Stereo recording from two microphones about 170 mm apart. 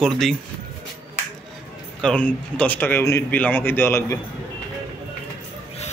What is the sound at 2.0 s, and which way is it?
Speech, 5° left (ahead or behind).